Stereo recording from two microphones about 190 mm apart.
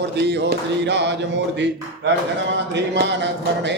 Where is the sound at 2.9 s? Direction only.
65° right (ahead or behind).